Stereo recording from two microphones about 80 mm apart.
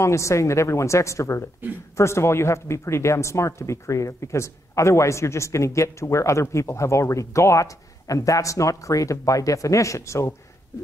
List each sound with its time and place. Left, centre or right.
0.0 s speech: left